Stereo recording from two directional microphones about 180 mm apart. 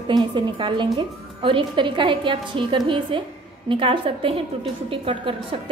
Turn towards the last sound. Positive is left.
turn(degrees=-30)  # may be behind; listen again after turning